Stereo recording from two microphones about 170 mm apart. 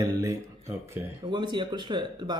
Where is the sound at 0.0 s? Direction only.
15° right (ahead or behind).